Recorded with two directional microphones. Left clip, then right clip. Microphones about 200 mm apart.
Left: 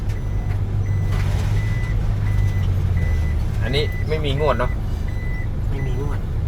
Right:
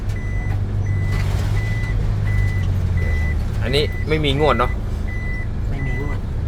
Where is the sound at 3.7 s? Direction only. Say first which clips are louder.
Right 3 dB; 35° right (ahead or behind).